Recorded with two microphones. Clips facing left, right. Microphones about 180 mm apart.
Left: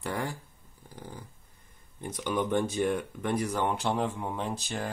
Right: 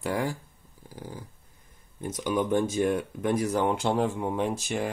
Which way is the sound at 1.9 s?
10° right (ahead or behind).